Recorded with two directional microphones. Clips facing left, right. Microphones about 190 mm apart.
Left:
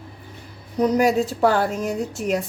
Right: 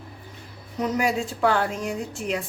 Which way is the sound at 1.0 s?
40° left (ahead or behind).